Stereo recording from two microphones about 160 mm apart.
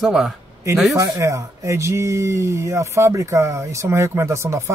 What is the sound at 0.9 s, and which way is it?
Speech, 20° right (ahead or behind).